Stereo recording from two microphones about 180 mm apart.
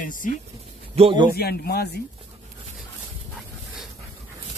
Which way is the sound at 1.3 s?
60° left (ahead or behind).